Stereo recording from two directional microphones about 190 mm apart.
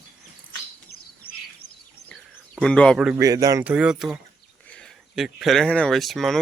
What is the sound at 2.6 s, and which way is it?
Speech, 5° left (ahead or behind).